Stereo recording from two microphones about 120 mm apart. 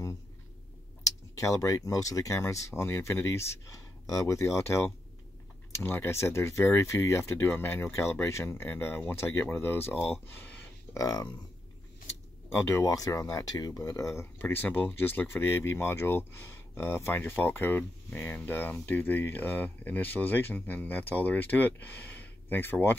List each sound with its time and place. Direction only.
1.4 s speech: 25° left (ahead or behind)
10.2 s a sound: 20° left (ahead or behind)
12.4 s speech: 25° left (ahead or behind)